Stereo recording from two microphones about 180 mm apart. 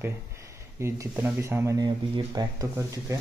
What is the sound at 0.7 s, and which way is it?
Speech, 15° right (ahead or behind).